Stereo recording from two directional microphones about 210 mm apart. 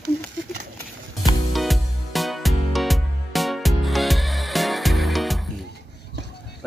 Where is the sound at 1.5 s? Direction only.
Centre (ahead or behind).